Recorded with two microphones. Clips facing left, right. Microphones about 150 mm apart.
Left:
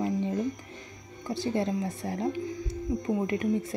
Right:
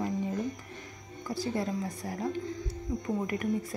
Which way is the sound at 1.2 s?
25° left (ahead or behind).